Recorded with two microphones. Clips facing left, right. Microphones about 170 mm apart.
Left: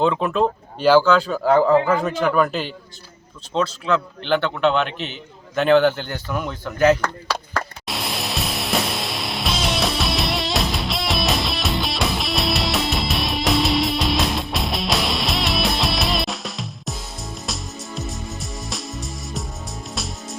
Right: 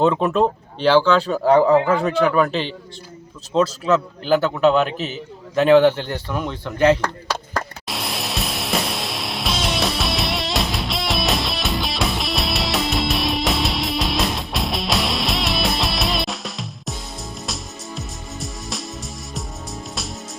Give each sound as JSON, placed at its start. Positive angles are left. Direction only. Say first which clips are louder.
{"t": 0.0, "sound": "a man's voice", "louder": "right 2 dB", "side_deg": 0}
{"t": 4.2, "sound": "a man's voice", "louder": "right 3 dB", "side_deg": -5}
{"t": 7.9, "sound": "music", "louder": "even", "side_deg": 0}